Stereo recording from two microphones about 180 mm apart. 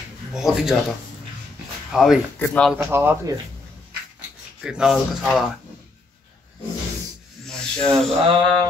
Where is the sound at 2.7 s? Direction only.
10° right (ahead or behind).